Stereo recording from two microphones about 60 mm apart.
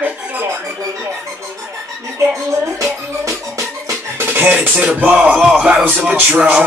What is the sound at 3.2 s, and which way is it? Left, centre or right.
Speech, right.